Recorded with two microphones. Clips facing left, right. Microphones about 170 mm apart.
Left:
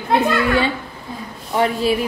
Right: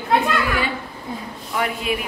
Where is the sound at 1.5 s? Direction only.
30° left (ahead or behind).